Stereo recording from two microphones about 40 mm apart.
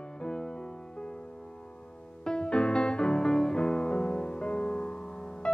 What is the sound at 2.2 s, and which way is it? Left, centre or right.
Music, left.